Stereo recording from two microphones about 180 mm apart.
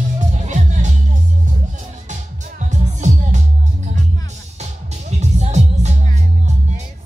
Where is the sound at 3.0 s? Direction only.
40° right (ahead or behind).